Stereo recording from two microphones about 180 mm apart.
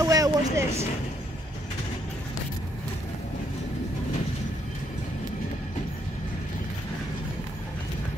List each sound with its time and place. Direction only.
0.0 s vehicle: 20° right (ahead or behind)